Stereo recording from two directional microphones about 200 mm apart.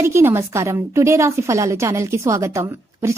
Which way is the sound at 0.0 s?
15° right (ahead or behind).